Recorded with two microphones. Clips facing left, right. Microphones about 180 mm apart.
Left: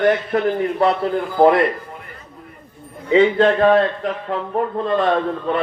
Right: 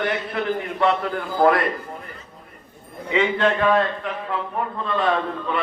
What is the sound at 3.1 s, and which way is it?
A man's voice, 35° left (ahead or behind).